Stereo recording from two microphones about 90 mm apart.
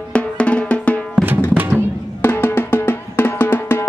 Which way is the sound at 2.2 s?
25° left (ahead or behind).